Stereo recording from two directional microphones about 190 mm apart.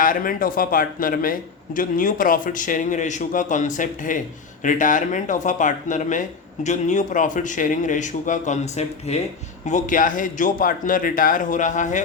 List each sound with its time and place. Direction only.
0.0 s a man's voice: 45° left (ahead or behind)